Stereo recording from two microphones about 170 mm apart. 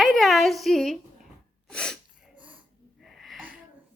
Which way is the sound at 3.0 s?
Centre (ahead or behind).